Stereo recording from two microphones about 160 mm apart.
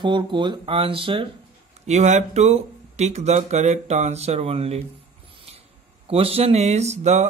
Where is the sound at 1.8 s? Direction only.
45° right (ahead or behind).